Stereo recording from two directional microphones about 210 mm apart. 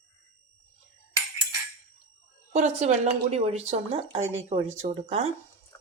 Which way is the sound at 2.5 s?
35° right (ahead or behind).